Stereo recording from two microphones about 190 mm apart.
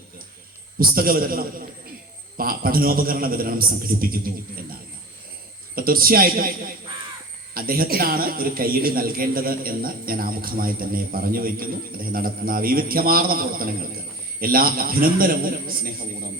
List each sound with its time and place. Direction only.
0.8 s a man's voice: 50° right (ahead or behind)
5.7 s a man's voice: 50° right (ahead or behind)
7.5 s a man's voice: 50° right (ahead or behind)